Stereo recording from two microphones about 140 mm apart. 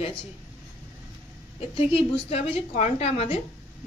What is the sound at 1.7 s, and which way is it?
A woman's voice, 45° left (ahead or behind).